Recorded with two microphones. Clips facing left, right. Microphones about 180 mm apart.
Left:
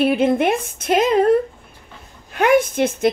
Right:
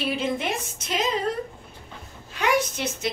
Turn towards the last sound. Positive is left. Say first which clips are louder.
# left 10 dB
turn(degrees=55)  # may be behind; listen again after turning